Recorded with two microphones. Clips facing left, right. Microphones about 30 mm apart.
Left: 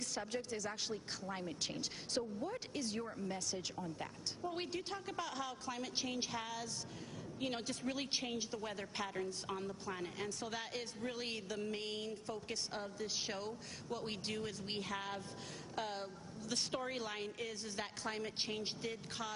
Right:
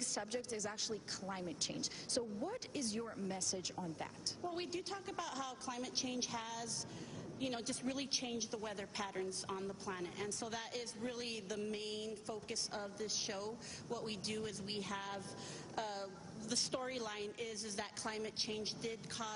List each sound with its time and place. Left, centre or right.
0.1 s a woman's voice: centre